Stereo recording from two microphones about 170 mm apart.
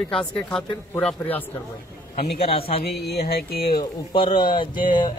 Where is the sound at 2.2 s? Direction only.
35° left (ahead or behind).